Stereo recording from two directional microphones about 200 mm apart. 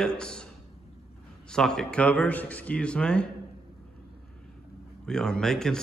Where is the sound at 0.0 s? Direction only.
5° left (ahead or behind).